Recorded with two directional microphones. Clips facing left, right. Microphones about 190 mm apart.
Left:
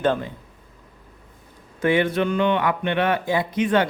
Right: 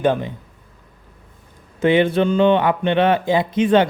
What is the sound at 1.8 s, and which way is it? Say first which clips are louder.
Speech: right 4 dB; 25° right (ahead or behind).